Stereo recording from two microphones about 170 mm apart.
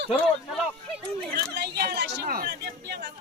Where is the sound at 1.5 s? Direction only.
70° right (ahead or behind).